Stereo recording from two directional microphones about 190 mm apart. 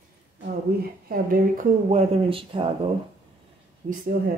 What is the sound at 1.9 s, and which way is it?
Speech, 30° right (ahead or behind).